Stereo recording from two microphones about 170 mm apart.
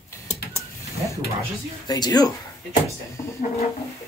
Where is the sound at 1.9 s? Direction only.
25° left (ahead or behind).